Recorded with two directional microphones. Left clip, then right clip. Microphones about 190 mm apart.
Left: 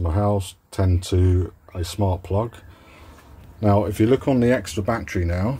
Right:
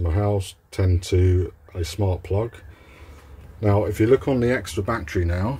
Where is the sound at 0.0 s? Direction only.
20° left (ahead or behind).